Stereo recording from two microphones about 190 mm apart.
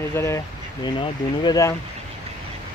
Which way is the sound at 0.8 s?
25° left (ahead or behind).